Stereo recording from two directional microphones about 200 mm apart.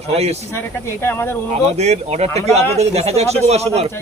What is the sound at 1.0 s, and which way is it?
Speech, 10° left (ahead or behind).